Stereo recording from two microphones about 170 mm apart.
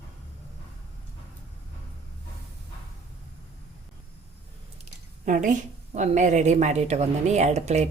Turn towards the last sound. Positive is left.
turn(degrees=-40)  # may be behind; listen again after turning